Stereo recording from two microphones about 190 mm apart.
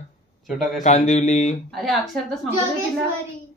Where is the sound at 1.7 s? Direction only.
Centre (ahead or behind).